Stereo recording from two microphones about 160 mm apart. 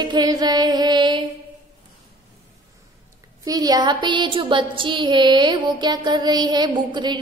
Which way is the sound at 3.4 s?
25° right (ahead or behind).